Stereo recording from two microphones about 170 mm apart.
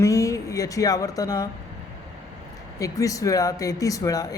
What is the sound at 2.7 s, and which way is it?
A man's voice, 20° left (ahead or behind).